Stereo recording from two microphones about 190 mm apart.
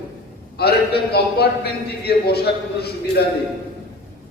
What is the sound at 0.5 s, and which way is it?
A man's voice, 55° left (ahead or behind).